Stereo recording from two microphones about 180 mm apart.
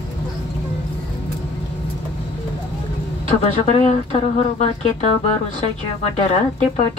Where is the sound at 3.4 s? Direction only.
35° left (ahead or behind).